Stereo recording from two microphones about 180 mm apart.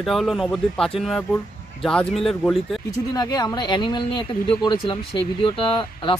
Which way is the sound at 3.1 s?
20° left (ahead or behind).